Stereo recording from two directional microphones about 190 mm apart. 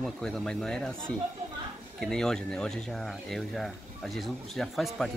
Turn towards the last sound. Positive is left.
turn(degrees=0)  # may be behind; listen again after turning